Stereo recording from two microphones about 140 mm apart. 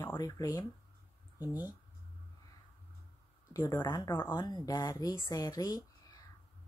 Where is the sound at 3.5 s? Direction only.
15° left (ahead or behind).